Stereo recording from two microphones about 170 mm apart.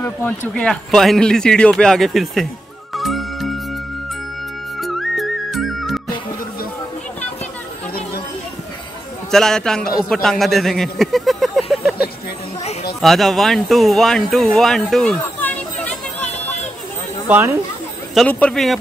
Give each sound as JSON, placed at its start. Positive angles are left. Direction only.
{"t": 0.6, "sound": "speech", "side_deg": 5}
{"t": 2.9, "sound": "music", "side_deg": 0}
{"t": 4.7, "sound": "music", "side_deg": 0}
{"t": 9.3, "sound": "a man's voice", "side_deg": 5}
{"t": 13.0, "sound": "speech", "side_deg": 0}
{"t": 16.3, "sound": "a sound", "side_deg": 40}
{"t": 17.3, "sound": "speech", "side_deg": -15}
{"t": 18.1, "sound": "speech", "side_deg": 5}